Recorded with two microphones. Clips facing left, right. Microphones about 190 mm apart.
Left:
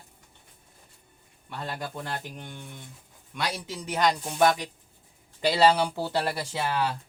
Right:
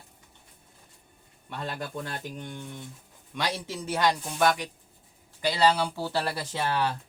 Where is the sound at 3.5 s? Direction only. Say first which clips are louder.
Right 1 dB; 15° left (ahead or behind).